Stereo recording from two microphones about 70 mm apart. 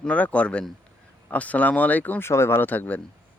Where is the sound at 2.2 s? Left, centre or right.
Left.